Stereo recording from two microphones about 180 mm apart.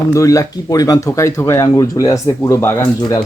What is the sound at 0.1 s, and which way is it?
Speech, 15° left (ahead or behind).